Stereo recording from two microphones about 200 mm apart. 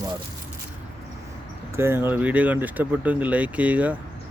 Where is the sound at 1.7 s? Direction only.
10° right (ahead or behind).